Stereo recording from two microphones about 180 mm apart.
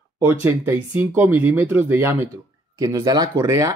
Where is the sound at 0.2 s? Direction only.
10° right (ahead or behind).